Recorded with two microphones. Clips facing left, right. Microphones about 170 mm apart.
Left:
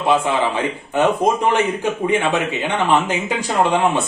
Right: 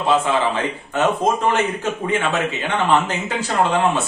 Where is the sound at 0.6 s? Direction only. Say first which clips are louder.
Left 2 dB; 15° left (ahead or behind).